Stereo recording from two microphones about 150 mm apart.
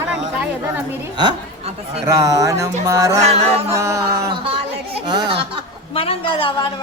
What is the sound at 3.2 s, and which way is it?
Chant, 45° right (ahead or behind).